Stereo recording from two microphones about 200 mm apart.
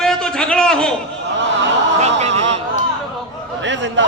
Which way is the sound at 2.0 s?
35° right (ahead or behind).